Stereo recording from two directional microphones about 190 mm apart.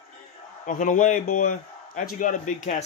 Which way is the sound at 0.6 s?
45° left (ahead or behind).